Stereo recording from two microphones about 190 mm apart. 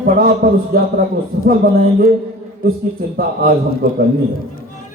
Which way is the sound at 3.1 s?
50° right (ahead or behind).